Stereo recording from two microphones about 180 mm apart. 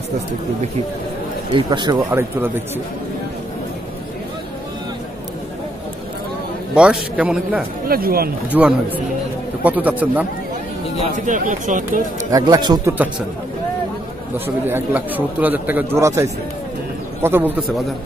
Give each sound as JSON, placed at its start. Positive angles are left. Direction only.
{"t": 1.5, "sound": "a man's voice", "side_deg": -25}
{"t": 2.0, "sound": "speech", "side_deg": -10}
{"t": 6.7, "sound": "a man's voice", "side_deg": -5}
{"t": 7.9, "sound": "speech", "side_deg": -55}
{"t": 8.5, "sound": "speech", "side_deg": -10}
{"t": 11.1, "sound": "speech", "side_deg": -45}
{"t": 12.3, "sound": "a man's voice", "side_deg": -20}
{"t": 14.3, "sound": "a man's voice", "side_deg": -10}